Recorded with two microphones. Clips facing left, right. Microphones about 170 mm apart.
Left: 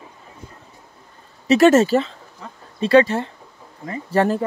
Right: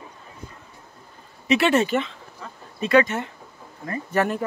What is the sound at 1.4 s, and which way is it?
Speech, 40° left (ahead or behind).